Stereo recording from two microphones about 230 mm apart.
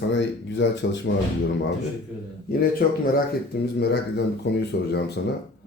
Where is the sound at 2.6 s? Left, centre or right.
Left.